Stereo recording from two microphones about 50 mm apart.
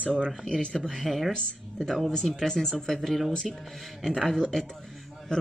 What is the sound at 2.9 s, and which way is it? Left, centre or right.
A woman's voice, centre.